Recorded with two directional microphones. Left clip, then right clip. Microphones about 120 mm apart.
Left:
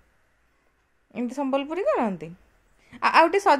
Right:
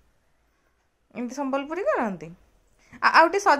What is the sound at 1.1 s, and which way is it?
A woman's voice, 25° left (ahead or behind).